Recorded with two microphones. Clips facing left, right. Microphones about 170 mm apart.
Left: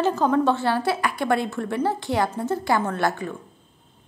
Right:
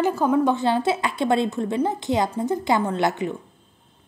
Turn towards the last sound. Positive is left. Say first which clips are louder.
# right 2 dB
turn(degrees=-20)  # may be behind; listen again after turning